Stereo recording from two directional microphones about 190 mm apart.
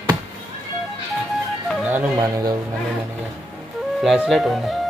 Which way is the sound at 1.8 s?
15° right (ahead or behind).